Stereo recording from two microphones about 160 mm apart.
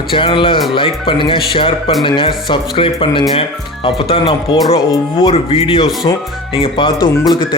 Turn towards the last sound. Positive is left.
turn(degrees=30)  # may be behind; listen again after turning